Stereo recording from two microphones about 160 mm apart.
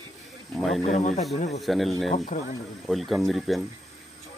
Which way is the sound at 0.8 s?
45° left (ahead or behind).